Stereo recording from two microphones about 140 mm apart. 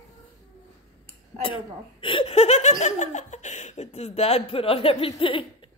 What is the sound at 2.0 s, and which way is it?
Laughter, 40° left (ahead or behind).